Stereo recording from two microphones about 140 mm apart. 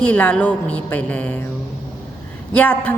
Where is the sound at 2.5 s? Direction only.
10° left (ahead or behind).